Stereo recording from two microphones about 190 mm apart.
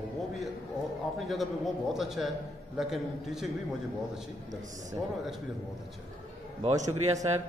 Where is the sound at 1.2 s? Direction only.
Centre (ahead or behind).